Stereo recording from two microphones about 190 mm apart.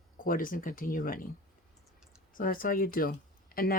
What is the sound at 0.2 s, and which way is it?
Speech, 45° left (ahead or behind).